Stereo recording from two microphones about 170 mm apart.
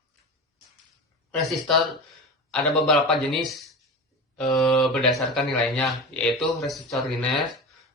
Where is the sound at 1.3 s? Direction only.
Centre (ahead or behind).